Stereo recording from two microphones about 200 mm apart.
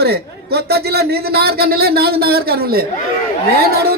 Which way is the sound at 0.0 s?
55° right (ahead or behind).